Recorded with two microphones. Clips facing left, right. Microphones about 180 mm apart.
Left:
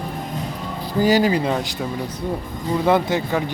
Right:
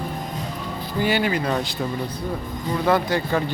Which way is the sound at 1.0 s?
40° left (ahead or behind).